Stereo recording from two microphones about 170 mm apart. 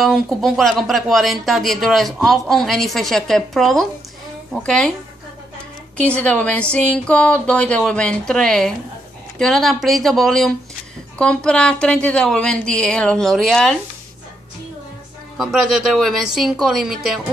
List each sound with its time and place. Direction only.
0.0 s speech: centre (ahead or behind)
5.9 s speech: 5° left (ahead or behind)
15.3 s speech: centre (ahead or behind)